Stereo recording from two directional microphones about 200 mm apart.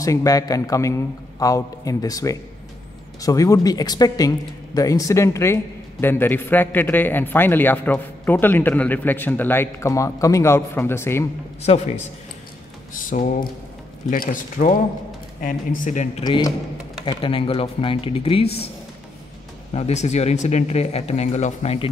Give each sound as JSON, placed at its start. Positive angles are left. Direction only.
{"t": 0.0, "sound": "speech", "side_deg": 15}
{"t": 11.6, "sound": "speech", "side_deg": 35}
{"t": 15.8, "sound": "speech", "side_deg": 35}
{"t": 16.3, "sound": "speech", "side_deg": 20}
{"t": 19.7, "sound": "speech", "side_deg": 35}